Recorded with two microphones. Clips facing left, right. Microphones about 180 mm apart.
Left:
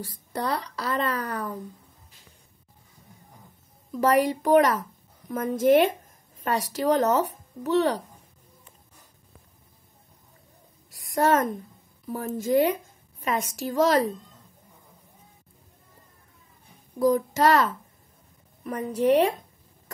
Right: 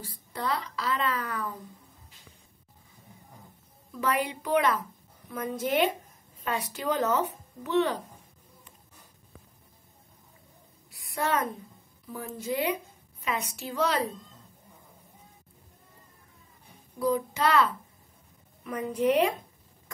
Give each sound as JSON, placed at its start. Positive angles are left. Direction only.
{"t": 0.0, "sound": "a woman's voice", "side_deg": 40}
{"t": 4.0, "sound": "a woman's voice", "side_deg": 45}
{"t": 10.9, "sound": "a sound", "side_deg": 45}
{"t": 12.1, "sound": "a woman's voice", "side_deg": 45}
{"t": 17.0, "sound": "a woman's voice", "side_deg": 45}